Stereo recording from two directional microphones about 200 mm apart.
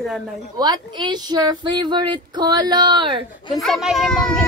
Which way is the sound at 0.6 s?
20° right (ahead or behind).